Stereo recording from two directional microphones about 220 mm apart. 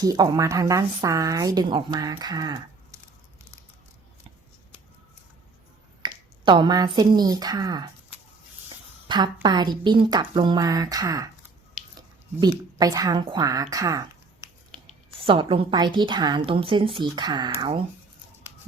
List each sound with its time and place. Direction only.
0.0 s speech: 15° right (ahead or behind)
6.0 s speech: 20° right (ahead or behind)
9.0 s a woman's voice: 20° right (ahead or behind)
12.4 s speech: 15° right (ahead or behind)
15.2 s a woman's voice: 25° right (ahead or behind)